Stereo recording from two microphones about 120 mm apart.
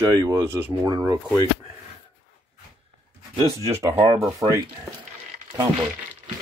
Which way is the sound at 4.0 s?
30° right (ahead or behind).